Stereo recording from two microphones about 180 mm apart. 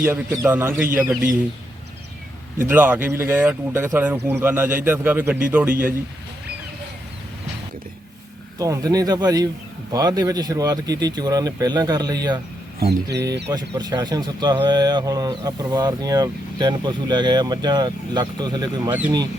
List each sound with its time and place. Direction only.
0.0 s a man's voice: 15° right (ahead or behind)
2.6 s a man's voice: 10° right (ahead or behind)
8.5 s speech: 20° right (ahead or behind)
12.8 s speech: 70° right (ahead or behind)
13.5 s speech: 20° right (ahead or behind)
18.9 s a man's voice: 10° right (ahead or behind)